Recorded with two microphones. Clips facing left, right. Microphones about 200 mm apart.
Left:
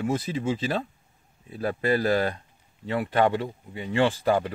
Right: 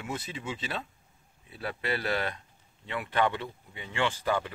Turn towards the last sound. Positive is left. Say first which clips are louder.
# left 7 dB
turn(degrees=40)  # may be behind; listen again after turning